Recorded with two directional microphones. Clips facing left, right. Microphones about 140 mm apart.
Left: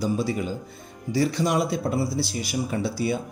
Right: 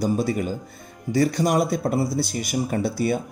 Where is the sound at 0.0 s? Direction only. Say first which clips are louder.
Right 3 dB; 50° right (ahead or behind).